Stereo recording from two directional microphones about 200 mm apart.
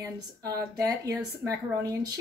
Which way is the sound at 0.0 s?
15° right (ahead or behind).